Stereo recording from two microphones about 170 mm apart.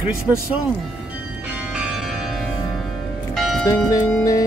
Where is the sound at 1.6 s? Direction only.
5° right (ahead or behind).